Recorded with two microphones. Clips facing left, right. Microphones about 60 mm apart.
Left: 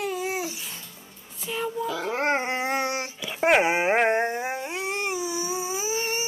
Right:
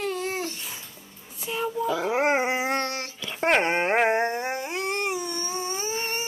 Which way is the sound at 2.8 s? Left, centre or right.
Centre.